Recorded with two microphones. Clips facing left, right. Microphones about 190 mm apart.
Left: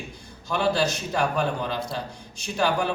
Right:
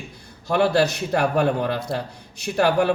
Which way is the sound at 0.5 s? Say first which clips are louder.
Right 5 dB; 60° right (ahead or behind).